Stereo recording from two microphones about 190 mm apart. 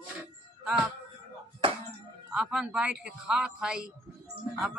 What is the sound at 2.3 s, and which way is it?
Speech, 5° right (ahead or behind).